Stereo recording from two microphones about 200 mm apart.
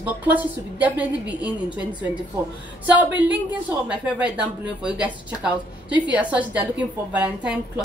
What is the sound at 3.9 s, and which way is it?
A woman's voice, 5° right (ahead or behind).